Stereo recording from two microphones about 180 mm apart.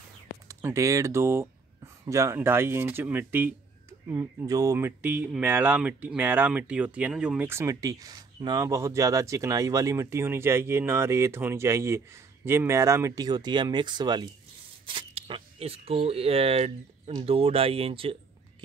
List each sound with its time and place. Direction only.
0.5 s speech: 15° right (ahead or behind); by 18.1 s 30° right (ahead or behind)